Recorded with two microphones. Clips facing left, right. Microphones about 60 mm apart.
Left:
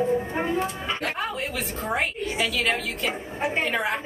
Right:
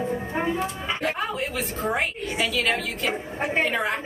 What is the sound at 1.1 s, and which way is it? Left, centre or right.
A woman's voice, centre.